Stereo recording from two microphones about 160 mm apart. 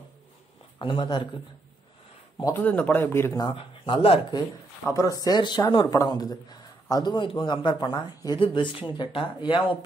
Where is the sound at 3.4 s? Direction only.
30° left (ahead or behind).